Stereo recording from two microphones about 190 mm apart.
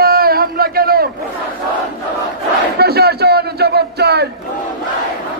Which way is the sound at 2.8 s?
55° right (ahead or behind).